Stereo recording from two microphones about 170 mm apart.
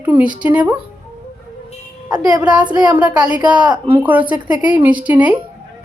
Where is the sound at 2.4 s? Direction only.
5° right (ahead or behind).